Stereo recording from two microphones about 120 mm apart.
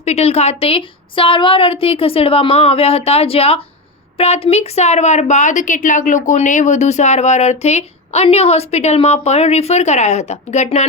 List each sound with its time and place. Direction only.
0.0 s a woman's voice: 60° left (ahead or behind)